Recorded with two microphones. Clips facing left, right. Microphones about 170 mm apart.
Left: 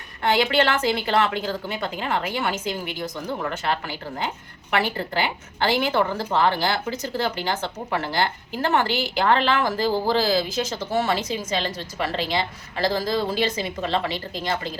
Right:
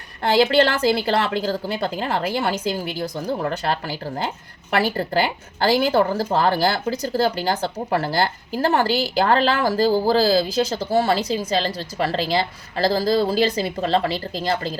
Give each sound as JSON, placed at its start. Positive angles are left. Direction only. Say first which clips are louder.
{"t": 0.2, "sound": "a woman's voice", "louder": "right 4 dB", "side_deg": -35}